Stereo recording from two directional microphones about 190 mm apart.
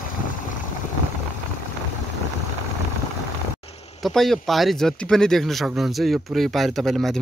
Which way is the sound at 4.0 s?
Centre (ahead or behind).